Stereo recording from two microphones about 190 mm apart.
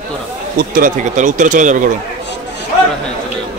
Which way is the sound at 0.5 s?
50° right (ahead or behind).